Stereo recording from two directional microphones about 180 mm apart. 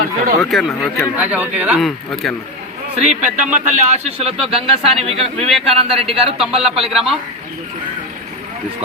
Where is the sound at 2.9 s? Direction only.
40° right (ahead or behind).